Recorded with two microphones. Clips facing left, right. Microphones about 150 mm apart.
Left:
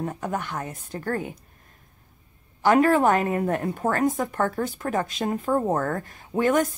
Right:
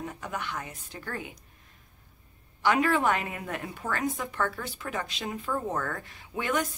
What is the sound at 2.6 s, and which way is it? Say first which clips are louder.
A woman's voice: left 7 dB; 45° left (ahead or behind).